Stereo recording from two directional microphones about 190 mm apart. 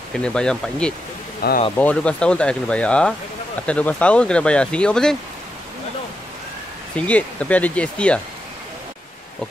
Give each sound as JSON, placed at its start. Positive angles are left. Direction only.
{"t": 0.1, "sound": "speech", "side_deg": 5}
{"t": 1.4, "sound": "speech", "side_deg": 55}
{"t": 1.8, "sound": "speech", "side_deg": 5}
{"t": 7.0, "sound": "speech", "side_deg": 5}